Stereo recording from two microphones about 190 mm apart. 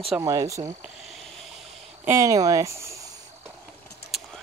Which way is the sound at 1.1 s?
Centre (ahead or behind).